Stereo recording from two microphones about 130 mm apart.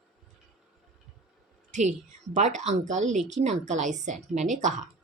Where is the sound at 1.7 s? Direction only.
65° right (ahead or behind).